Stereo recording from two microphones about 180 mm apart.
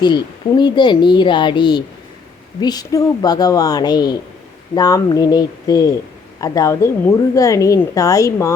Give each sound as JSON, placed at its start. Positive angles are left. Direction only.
{"t": 0.0, "sound": "a woman's voice", "side_deg": 25}